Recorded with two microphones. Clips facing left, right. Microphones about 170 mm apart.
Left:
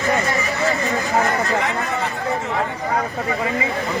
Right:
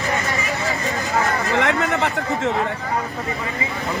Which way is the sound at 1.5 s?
85° right.